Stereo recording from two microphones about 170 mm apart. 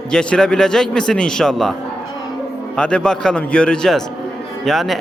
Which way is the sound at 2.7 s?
5° left (ahead or behind).